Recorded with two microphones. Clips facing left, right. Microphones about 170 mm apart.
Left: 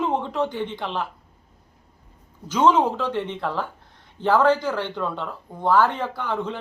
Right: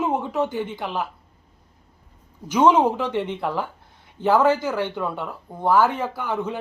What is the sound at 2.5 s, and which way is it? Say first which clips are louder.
Speech: right 2 dB; 10° right (ahead or behind).